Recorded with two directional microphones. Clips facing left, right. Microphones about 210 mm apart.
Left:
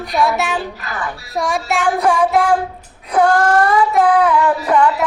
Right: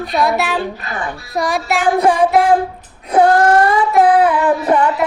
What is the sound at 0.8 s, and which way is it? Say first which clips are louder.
Female singing: right 1 dB; 25° right (ahead or behind).